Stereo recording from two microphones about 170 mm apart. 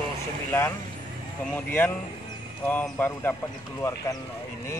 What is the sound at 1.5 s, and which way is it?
Speech, 10° left (ahead or behind).